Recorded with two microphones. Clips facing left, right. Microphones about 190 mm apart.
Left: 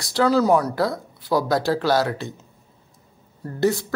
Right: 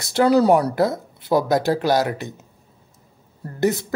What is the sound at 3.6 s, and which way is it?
Speech, 20° right (ahead or behind).